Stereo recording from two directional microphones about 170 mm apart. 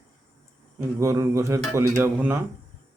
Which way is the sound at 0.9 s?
20° right (ahead or behind).